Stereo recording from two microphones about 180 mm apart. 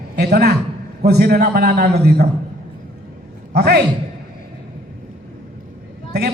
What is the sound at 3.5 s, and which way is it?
Speech, 65° right (ahead or behind).